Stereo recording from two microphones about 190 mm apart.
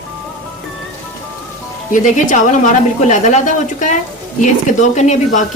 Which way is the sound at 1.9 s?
40° left (ahead or behind).